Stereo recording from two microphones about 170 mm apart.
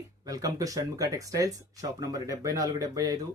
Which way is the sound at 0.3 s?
20° right (ahead or behind).